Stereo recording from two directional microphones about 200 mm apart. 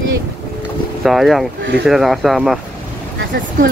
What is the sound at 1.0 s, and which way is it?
Speech, centre (ahead or behind).